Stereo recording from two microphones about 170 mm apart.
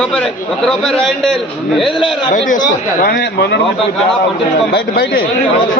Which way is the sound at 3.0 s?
70° left (ahead or behind).